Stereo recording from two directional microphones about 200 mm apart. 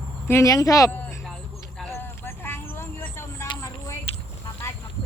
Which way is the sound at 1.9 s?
10° left (ahead or behind).